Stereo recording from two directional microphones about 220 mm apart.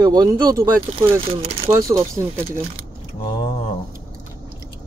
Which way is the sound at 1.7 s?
15° right (ahead or behind).